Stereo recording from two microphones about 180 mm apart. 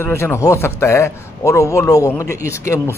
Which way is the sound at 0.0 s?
15° left (ahead or behind).